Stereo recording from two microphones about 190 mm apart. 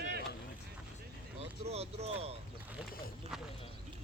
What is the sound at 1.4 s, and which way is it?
Boat, 30° right (ahead or behind).